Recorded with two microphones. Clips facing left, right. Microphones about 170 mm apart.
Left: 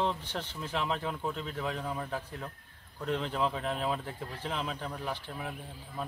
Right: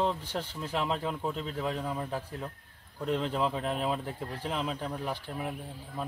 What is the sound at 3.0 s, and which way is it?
Speech, centre (ahead or behind).